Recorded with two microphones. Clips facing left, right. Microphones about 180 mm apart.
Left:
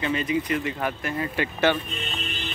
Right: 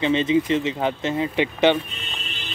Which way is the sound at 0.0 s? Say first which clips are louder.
Right 6 dB; 25° right (ahead or behind).